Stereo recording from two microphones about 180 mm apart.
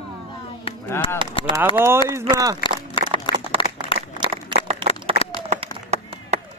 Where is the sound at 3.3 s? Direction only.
25° left (ahead or behind).